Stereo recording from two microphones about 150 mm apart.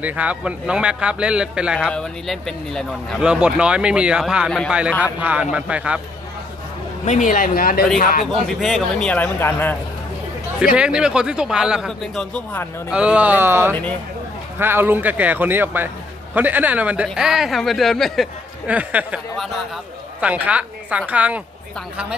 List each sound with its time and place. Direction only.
0.0 s speech: 10° right (ahead or behind)
7.1 s a man's voice: 60° left (ahead or behind); by 7.8 s 75° left (ahead or behind)
8.5 s speech: centre (ahead or behind)
10.8 s speech: 5° right (ahead or behind)
12.9 s a woman's voice: 10° right (ahead or behind)